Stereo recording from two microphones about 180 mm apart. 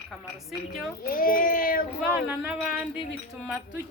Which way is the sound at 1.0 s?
50° left (ahead or behind).